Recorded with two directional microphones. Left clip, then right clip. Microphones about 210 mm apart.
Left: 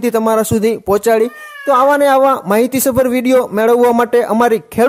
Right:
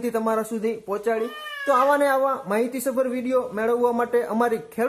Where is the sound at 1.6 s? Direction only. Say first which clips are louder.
Left 9 dB; 35° left (ahead or behind).